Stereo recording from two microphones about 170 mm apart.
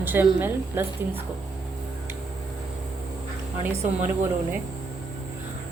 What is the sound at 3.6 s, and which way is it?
Speech, 10° right (ahead or behind).